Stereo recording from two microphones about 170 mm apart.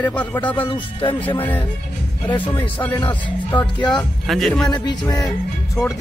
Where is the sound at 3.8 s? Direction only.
Centre (ahead or behind).